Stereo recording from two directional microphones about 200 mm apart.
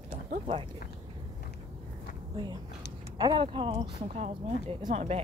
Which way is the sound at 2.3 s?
20° right (ahead or behind).